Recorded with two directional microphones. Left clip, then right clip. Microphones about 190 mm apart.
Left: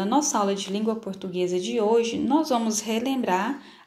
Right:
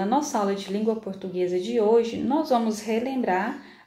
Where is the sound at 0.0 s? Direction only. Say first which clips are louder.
Left 1 dB; 20° left (ahead or behind).